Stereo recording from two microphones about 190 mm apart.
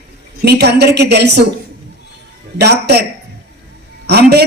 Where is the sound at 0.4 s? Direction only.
60° right (ahead or behind).